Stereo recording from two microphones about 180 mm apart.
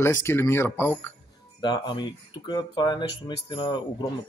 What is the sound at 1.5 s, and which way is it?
Speech, 25° left (ahead or behind).